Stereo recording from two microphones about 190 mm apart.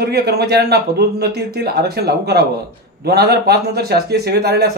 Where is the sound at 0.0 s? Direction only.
55° right (ahead or behind).